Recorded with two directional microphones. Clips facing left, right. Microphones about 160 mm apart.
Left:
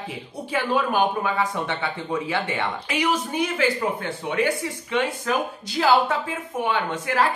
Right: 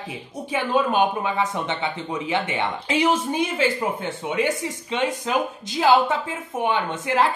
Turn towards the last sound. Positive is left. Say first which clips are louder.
# right 1 dB
turn(degrees=-20)  # may be behind; listen again after turning